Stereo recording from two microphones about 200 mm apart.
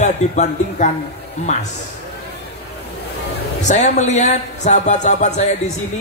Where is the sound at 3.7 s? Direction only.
35° left (ahead or behind).